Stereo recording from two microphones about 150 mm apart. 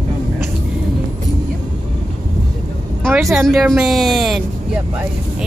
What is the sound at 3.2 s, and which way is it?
Speech, centre (ahead or behind).